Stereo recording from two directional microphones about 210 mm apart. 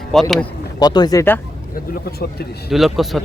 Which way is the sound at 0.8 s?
20° left (ahead or behind).